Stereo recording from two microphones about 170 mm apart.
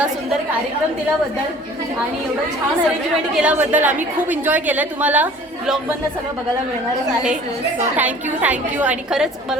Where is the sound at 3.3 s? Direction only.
10° right (ahead or behind).